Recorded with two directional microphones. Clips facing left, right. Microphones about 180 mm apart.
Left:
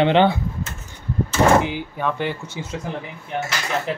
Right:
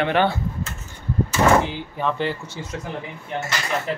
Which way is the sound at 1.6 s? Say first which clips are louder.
Left 1 dB; 10° left (ahead or behind).